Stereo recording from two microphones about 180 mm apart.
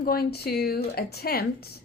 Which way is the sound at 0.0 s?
60° left (ahead or behind).